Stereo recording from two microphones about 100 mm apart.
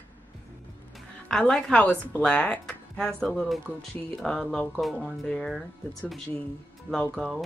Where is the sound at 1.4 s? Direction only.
15° left (ahead or behind).